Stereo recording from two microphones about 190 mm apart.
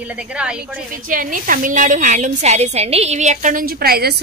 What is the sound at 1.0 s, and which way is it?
A woman's voice, 45° right (ahead or behind).